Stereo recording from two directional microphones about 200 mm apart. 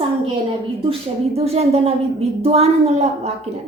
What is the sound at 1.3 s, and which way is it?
A woman's voice, 30° right (ahead or behind).